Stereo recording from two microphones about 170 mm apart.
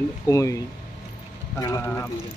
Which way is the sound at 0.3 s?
20° left (ahead or behind).